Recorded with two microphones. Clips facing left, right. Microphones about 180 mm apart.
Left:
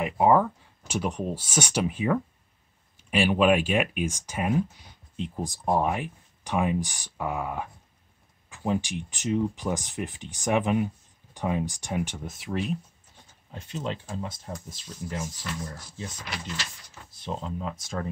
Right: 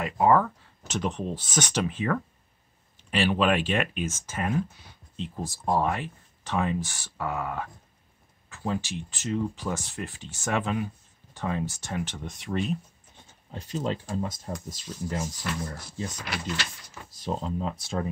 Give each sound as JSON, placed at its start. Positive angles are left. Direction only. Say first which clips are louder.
{"t": 0.0, "sound": "speech", "louder": "left 1 dB", "side_deg": 15}
{"t": 13.5, "sound": "speech", "louder": "right 3 dB", "side_deg": -35}
{"t": 15.4, "sound": "speech", "louder": "right 3 dB", "side_deg": -70}
{"t": 17.1, "sound": "speech", "louder": "right 3 dB", "side_deg": -40}